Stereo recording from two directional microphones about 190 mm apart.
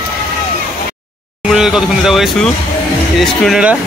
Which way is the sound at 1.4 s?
5° right (ahead or behind).